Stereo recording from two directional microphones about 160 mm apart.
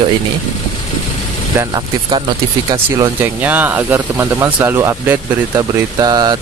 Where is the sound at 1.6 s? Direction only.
25° right (ahead or behind).